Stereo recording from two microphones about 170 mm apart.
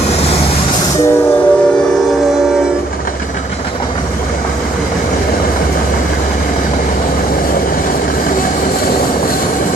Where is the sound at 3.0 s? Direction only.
55° left (ahead or behind).